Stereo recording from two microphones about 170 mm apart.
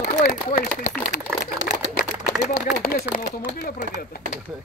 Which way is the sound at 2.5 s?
60° left (ahead or behind).